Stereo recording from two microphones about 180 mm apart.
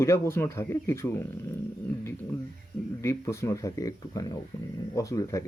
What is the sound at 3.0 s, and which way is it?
Speech, 15° left (ahead or behind).